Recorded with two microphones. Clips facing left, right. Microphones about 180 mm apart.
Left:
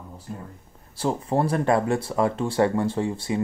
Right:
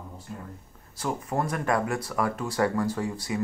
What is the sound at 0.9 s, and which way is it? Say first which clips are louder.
Speech: left 5 dB; 30° left (ahead or behind).